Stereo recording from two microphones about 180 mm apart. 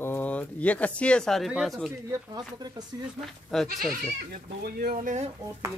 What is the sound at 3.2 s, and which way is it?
Speech, centre (ahead or behind).